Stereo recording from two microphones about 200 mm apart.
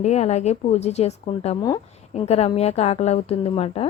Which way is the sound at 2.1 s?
30° left (ahead or behind).